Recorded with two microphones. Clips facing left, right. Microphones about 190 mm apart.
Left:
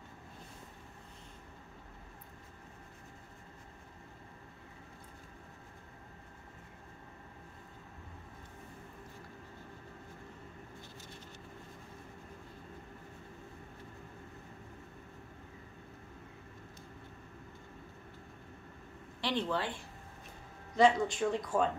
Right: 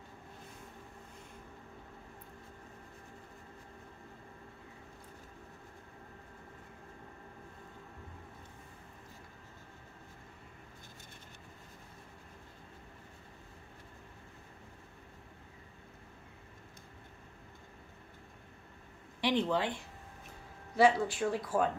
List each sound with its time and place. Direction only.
19.2 s speech: 15° right (ahead or behind)
20.7 s speech: 5° right (ahead or behind)